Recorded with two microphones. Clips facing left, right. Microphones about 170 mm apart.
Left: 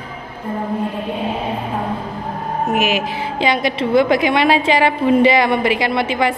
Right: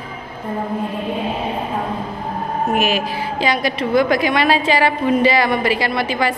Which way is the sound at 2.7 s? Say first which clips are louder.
Left 1 dB; 15° left (ahead or behind).